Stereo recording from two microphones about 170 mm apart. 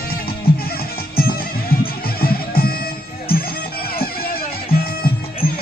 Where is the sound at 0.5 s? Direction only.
65° left (ahead or behind).